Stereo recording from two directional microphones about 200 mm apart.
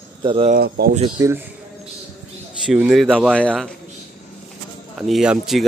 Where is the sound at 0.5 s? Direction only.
50° right (ahead or behind).